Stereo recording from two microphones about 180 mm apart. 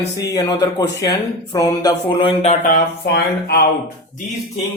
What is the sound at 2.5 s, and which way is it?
Speech, 45° left (ahead or behind).